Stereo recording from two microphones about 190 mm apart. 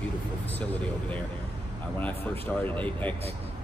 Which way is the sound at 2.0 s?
10° left (ahead or behind).